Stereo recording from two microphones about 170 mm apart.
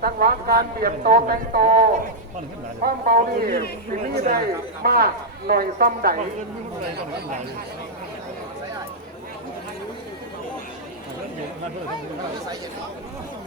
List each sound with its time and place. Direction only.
0.0 s speech: 65° right (ahead or behind)